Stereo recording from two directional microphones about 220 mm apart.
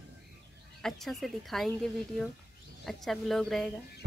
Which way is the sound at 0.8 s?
Centre (ahead or behind).